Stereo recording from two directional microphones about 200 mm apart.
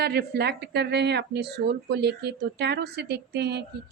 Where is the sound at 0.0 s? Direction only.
55° right (ahead or behind).